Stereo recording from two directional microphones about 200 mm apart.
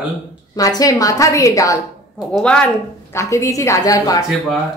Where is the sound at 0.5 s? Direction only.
20° left (ahead or behind).